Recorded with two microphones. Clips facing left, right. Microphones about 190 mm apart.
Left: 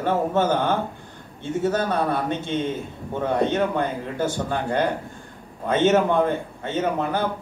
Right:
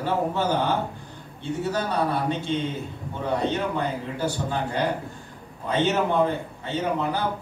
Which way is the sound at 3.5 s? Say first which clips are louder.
Left 4 dB; 50° left (ahead or behind).